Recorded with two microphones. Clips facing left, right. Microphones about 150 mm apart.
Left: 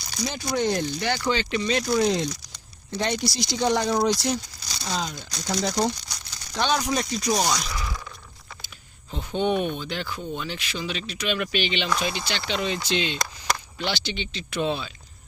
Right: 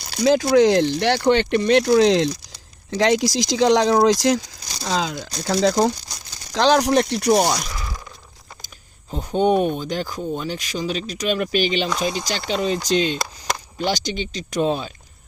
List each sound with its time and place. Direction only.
0.1 s speech: 75° right (ahead or behind); by 7.5 s 55° right (ahead or behind)
7.7 s a sound: 15° right (ahead or behind)
8.6 s speech: 40° right (ahead or behind)